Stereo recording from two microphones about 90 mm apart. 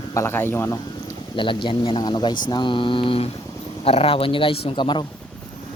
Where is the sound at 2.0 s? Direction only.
50° left (ahead or behind).